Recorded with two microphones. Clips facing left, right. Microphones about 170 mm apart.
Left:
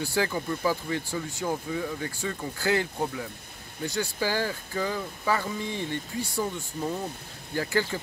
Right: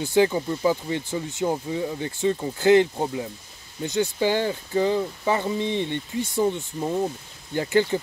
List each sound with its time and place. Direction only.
0.0 s speech: 20° right (ahead or behind)